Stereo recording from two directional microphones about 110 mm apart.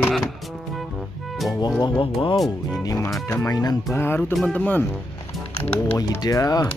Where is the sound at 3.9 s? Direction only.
20° left (ahead or behind).